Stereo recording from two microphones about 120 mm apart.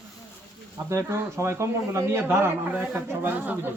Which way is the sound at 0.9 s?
25° right (ahead or behind).